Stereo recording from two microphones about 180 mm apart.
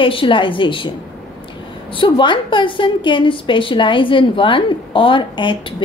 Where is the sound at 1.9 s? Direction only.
25° left (ahead or behind).